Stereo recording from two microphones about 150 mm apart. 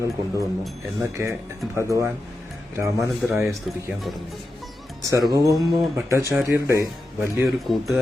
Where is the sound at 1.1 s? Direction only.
20° right (ahead or behind).